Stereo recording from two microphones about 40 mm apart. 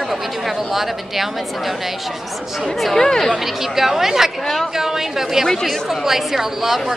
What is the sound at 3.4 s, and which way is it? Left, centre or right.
Speech, centre.